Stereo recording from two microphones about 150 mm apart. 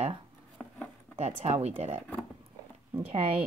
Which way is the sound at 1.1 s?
45° right (ahead or behind).